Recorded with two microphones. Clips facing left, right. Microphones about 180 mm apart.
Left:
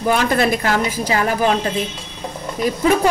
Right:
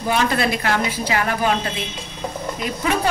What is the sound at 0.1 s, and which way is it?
A woman's voice, 45° left (ahead or behind).